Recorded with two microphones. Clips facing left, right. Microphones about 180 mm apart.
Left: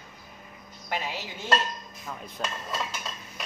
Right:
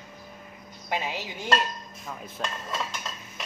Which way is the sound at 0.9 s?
15° right (ahead or behind).